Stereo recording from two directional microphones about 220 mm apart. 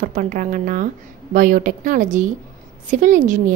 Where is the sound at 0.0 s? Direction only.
40° right (ahead or behind).